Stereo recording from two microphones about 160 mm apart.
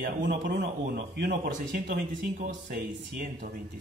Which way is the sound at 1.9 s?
55° right (ahead or behind).